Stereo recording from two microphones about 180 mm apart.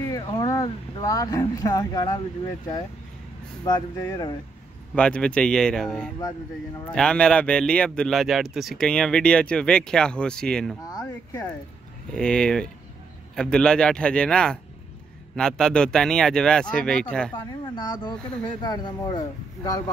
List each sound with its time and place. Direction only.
0.0 s speech: 20° left (ahead or behind)
3.6 s speech: 20° left (ahead or behind)
4.9 s a man's voice: 5° left (ahead or behind)
10.9 s a sound: 20° left (ahead or behind)
12.1 s a man's voice: 5° left (ahead or behind)
17.3 s speech: 25° left (ahead or behind)